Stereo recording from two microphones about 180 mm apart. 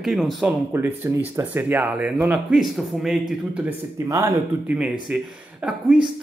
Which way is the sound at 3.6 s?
20° right (ahead or behind).